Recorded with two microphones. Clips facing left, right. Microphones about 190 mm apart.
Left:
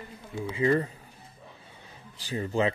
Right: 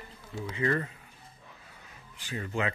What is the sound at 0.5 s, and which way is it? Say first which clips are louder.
Speech: left 5 dB; 25° left (ahead or behind).